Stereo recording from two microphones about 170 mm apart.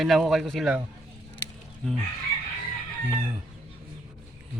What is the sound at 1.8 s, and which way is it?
Speech, 5° left (ahead or behind).